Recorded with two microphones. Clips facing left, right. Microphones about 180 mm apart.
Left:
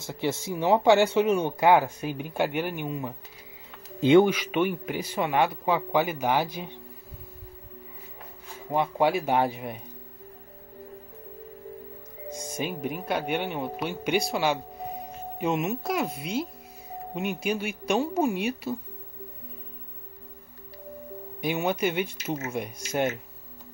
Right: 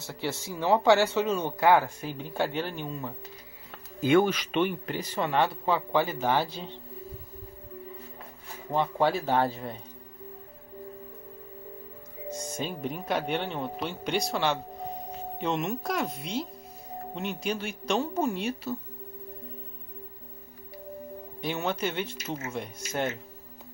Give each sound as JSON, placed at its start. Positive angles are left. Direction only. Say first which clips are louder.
{"t": 0.0, "sound": "speech", "louder": "left 4 dB", "side_deg": 20}
{"t": 4.3, "sound": "speech", "louder": "left 2 dB", "side_deg": 10}
{"t": 8.6, "sound": "speech", "louder": "left 2 dB", "side_deg": 10}
{"t": 12.3, "sound": "speech", "louder": "left 2 dB", "side_deg": 15}
{"t": 21.4, "sound": "speech", "louder": "left 4 dB", "side_deg": 10}